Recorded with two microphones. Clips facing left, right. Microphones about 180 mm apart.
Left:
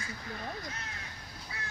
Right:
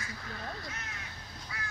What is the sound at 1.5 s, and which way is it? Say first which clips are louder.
Duck: right 1 dB; 25° left (ahead or behind).